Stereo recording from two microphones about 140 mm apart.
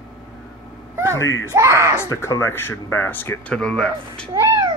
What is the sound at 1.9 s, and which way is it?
Speech, 20° left (ahead or behind).